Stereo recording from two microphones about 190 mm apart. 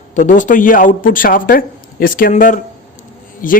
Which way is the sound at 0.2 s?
40° left (ahead or behind).